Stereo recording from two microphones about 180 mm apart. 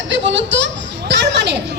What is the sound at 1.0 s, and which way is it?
Speech, 70° right (ahead or behind).